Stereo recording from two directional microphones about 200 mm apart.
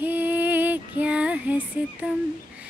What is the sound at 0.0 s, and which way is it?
Music, 10° right (ahead or behind).